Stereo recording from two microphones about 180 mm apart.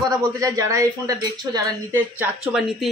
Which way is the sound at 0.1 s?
20° right (ahead or behind).